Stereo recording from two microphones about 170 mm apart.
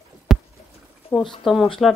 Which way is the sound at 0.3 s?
5° right (ahead or behind).